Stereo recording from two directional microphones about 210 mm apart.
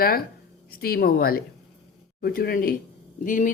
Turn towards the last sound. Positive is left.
turn(degrees=40)  # may be behind; listen again after turning